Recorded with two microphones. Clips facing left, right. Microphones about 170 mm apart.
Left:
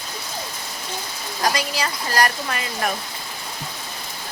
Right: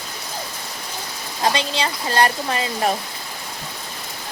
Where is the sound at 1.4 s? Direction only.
25° right (ahead or behind).